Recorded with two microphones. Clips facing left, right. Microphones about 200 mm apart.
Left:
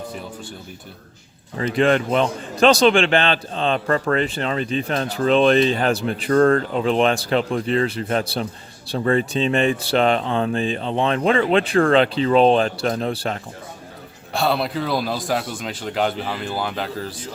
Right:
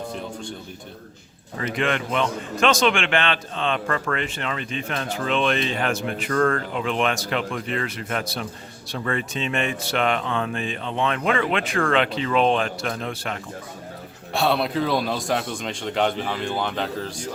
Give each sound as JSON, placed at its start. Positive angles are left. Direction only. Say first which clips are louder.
{"t": 1.5, "sound": "a man's voice", "louder": "left 7 dB", "side_deg": 30}
{"t": 14.3, "sound": "speech", "louder": "even", "side_deg": 0}